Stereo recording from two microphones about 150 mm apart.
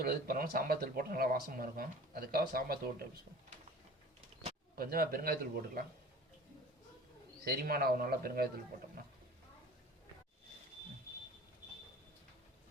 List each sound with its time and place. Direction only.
0.0 s speech: 80° right
4.7 s a man's voice: 80° right
7.4 s a man's voice: 85° right